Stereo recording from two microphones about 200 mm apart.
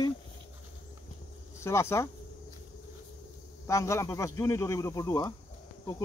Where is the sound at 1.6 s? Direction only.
15° left (ahead or behind).